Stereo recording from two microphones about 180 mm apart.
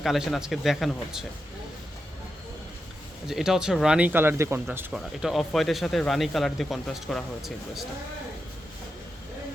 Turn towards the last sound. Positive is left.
turn(degrees=0)  # may be behind; listen again after turning